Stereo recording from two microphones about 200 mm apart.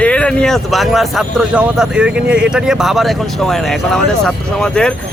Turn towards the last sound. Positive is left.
turn(degrees=5)  # may be behind; listen again after turning